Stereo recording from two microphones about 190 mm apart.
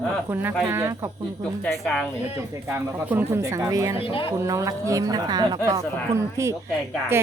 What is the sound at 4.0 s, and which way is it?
Speech, 30° left (ahead or behind).